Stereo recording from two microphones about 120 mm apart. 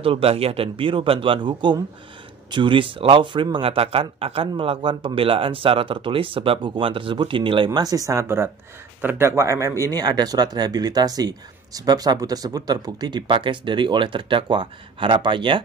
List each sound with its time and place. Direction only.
0.0 s a man's voice: 50° right (ahead or behind)